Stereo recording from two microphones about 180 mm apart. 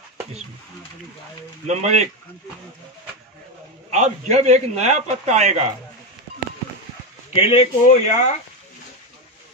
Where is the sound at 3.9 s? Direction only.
40° right (ahead or behind).